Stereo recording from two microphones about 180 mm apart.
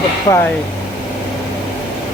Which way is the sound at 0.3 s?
35° left (ahead or behind).